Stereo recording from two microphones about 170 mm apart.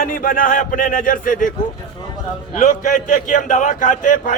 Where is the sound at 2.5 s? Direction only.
45° left (ahead or behind).